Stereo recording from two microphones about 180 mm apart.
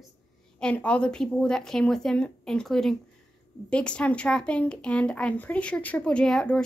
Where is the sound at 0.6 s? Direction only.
5° left (ahead or behind).